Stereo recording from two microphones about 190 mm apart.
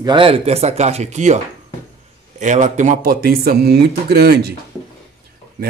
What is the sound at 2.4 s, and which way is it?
Speech, 40° right (ahead or behind).